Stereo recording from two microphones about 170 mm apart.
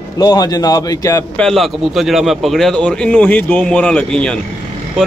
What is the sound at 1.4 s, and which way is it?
A man's voice, centre (ahead or behind).